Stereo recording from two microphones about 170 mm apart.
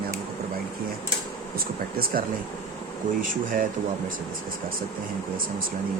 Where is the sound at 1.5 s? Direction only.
60° right (ahead or behind).